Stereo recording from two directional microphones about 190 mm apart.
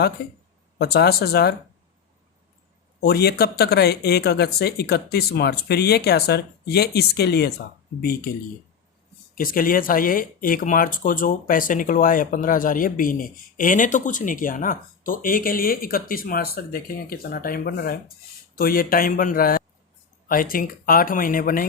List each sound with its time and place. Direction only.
0.2 s speech: 55° left (ahead or behind)
3.0 s speech: 55° left (ahead or behind)
9.3 s speech: 50° left (ahead or behind)